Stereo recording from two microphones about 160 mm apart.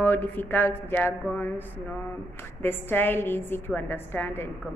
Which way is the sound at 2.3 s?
15° left (ahead or behind).